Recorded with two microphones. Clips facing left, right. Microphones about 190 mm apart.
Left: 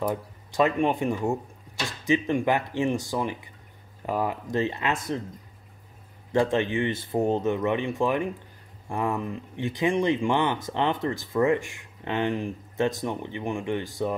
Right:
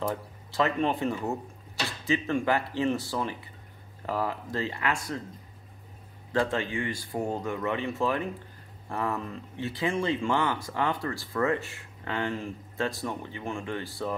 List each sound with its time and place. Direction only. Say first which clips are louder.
0.0 s speech: left 3 dB; 15° left (ahead or behind)
6.3 s speech: left 5 dB; 20° left (ahead or behind)